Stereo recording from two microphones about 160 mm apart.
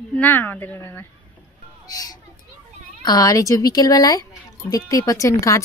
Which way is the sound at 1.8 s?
25° left (ahead or behind).